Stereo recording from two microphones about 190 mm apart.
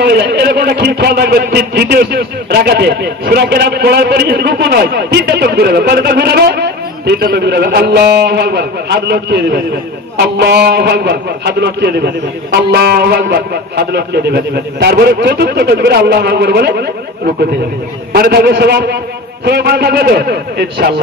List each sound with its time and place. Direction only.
0.0 s speech: 60° right (ahead or behind)
18.1 s speech: 55° right (ahead or behind)